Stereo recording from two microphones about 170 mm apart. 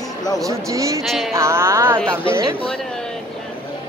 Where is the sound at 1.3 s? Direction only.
15° right (ahead or behind).